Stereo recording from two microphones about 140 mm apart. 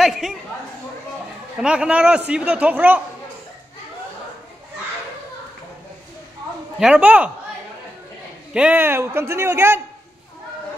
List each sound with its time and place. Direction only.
0.0 s a sound: centre (ahead or behind)
1.6 s a man's voice: 5° right (ahead or behind)
6.8 s a man's voice: 5° right (ahead or behind)
8.5 s a man's voice: 10° right (ahead or behind)